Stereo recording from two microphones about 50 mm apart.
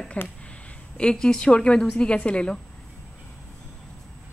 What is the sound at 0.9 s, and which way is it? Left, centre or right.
A woman's voice, centre.